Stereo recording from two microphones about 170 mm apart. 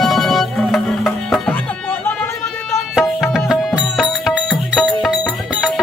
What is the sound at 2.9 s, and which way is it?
Music, 5° right (ahead or behind).